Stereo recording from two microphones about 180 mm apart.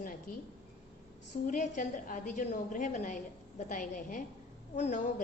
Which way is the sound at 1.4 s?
45° left (ahead or behind).